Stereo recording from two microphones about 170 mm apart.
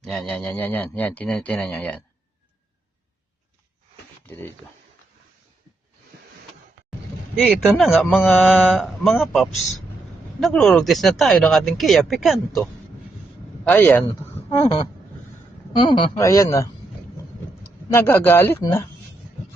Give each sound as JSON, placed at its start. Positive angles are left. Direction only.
{"t": 0.0, "sound": "speech", "side_deg": 0}
{"t": 7.4, "sound": "speech", "side_deg": -5}
{"t": 13.7, "sound": "speech", "side_deg": 10}
{"t": 15.7, "sound": "speech", "side_deg": 25}
{"t": 17.9, "sound": "speech", "side_deg": 10}